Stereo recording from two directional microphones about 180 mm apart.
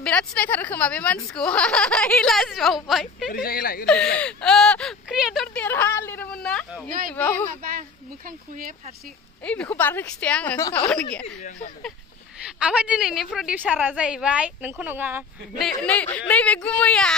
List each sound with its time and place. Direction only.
0.0 s a woman's voice: 5° left (ahead or behind)
3.3 s speech: 55° left (ahead or behind)
3.8 s speech: 5° left (ahead or behind)
9.4 s a woman's voice: 10° left (ahead or behind)
12.4 s a woman's voice: 5° right (ahead or behind)
15.8 s speech: 10° left (ahead or behind)